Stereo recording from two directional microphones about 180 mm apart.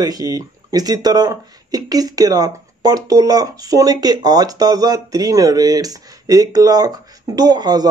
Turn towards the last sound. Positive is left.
turn(degrees=-20)  # may be behind; listen again after turning